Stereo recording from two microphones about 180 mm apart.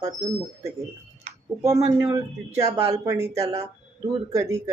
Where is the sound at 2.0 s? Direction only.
20° right (ahead or behind).